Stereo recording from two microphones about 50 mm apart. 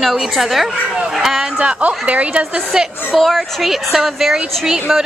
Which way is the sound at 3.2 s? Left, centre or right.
Centre.